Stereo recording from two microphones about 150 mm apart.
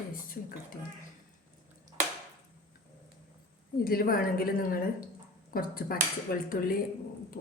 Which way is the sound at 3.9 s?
75° left (ahead or behind).